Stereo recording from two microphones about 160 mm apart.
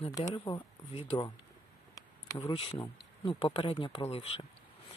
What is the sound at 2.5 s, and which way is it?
Speech, 35° left (ahead or behind).